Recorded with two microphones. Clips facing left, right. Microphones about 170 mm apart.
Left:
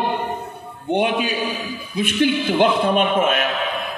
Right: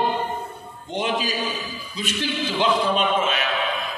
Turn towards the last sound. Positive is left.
turn(degrees=55)  # may be behind; listen again after turning